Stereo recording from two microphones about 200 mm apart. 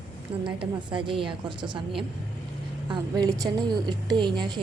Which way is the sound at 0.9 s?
25° right (ahead or behind).